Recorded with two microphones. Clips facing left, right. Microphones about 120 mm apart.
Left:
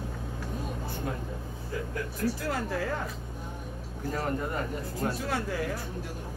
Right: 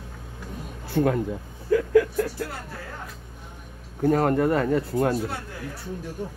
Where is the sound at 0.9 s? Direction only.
80° right.